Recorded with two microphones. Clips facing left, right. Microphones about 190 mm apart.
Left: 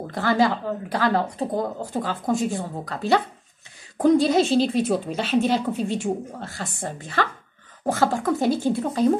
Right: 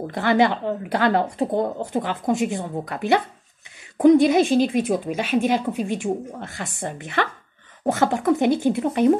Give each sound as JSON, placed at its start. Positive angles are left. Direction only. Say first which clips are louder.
{"t": 0.1, "sound": "a woman's voice", "louder": "right 2 dB", "side_deg": -20}